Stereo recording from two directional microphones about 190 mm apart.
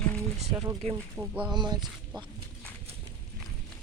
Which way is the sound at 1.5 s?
25° right (ahead or behind).